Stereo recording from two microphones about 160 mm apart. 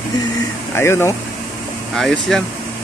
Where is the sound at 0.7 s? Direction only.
15° left (ahead or behind).